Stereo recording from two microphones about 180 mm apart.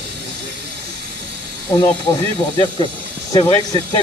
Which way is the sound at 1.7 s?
20° left (ahead or behind).